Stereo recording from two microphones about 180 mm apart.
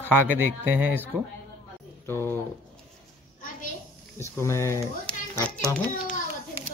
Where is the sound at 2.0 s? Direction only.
10° left (ahead or behind).